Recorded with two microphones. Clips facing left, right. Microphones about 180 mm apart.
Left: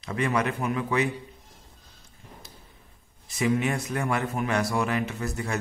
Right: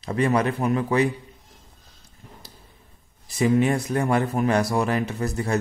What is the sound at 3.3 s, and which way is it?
Speech, 35° right (ahead or behind).